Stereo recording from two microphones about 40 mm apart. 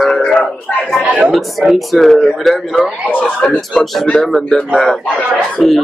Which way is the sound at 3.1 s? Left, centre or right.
Left.